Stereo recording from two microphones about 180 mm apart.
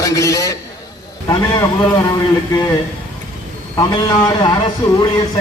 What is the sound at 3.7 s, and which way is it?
A man's voice, 25° left (ahead or behind).